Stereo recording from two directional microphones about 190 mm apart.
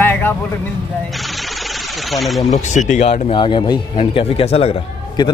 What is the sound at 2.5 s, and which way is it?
Speech, 40° left (ahead or behind).